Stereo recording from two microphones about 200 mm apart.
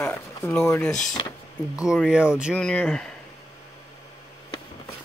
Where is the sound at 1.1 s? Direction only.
20° left (ahead or behind).